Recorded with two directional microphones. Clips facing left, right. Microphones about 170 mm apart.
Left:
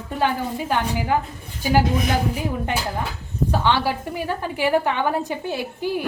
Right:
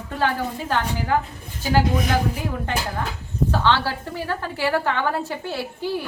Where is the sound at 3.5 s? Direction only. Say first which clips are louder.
Left 1 dB; 15° left (ahead or behind).